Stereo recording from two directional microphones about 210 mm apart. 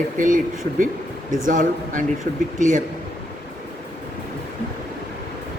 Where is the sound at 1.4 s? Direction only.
40° right (ahead or behind).